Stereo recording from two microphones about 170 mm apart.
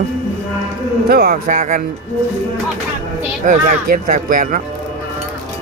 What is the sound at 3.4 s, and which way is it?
Speech, 50° right (ahead or behind).